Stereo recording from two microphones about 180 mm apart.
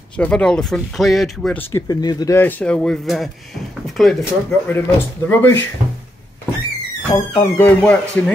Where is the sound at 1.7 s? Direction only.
20° left (ahead or behind); by 4.7 s centre (ahead or behind).